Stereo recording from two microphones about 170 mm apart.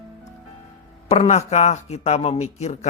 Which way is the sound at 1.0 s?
40° left (ahead or behind).